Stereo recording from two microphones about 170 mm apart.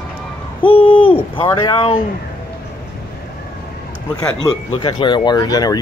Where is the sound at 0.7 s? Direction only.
30° left (ahead or behind).